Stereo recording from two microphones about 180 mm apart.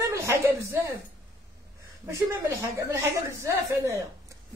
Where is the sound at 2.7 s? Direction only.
15° right (ahead or behind).